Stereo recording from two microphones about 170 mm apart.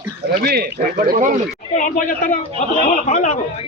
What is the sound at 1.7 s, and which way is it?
Speech, 50° left (ahead or behind).